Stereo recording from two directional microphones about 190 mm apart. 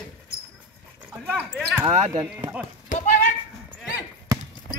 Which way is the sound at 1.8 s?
35° right (ahead or behind).